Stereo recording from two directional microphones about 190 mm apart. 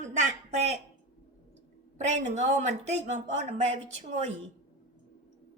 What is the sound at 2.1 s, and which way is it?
A woman's voice, 35° right (ahead or behind).